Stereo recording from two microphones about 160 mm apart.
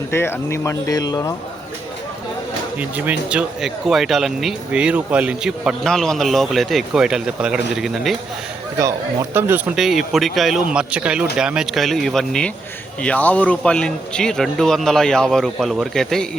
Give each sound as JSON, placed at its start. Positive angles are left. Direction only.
{"t": 0.1, "sound": "speech", "side_deg": 15}
{"t": 3.1, "sound": "speech", "side_deg": -5}
{"t": 9.3, "sound": "speech", "side_deg": -15}
{"t": 9.7, "sound": "speech", "side_deg": 0}